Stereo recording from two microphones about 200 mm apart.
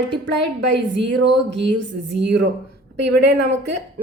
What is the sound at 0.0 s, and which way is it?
Speech, 60° right (ahead or behind).